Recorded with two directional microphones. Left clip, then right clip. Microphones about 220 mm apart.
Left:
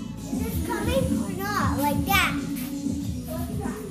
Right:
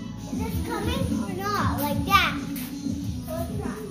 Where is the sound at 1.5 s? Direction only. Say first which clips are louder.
Left 3 dB; 15° left (ahead or behind).